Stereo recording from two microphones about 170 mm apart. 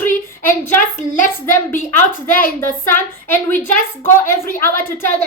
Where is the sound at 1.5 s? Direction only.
10° left (ahead or behind).